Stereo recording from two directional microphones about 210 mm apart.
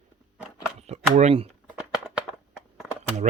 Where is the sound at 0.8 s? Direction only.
30° right (ahead or behind).